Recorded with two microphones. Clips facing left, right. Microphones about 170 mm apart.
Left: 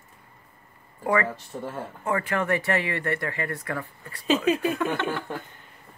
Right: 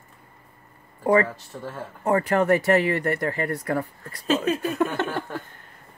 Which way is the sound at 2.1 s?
40° right (ahead or behind).